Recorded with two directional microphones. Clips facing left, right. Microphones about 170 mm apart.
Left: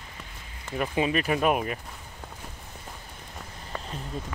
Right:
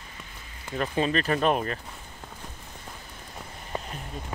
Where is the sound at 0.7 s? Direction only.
10° left (ahead or behind).